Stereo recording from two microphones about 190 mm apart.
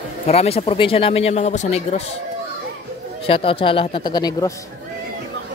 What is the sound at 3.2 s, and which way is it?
Speech, 30° left (ahead or behind).